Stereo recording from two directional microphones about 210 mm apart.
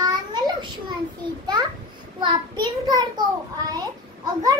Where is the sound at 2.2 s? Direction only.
20° right (ahead or behind).